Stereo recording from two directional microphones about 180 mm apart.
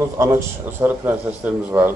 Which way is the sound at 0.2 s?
15° right (ahead or behind).